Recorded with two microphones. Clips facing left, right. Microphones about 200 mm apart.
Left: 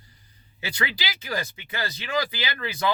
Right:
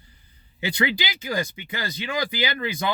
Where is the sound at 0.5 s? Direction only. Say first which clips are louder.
Right 6 dB; 20° right (ahead or behind).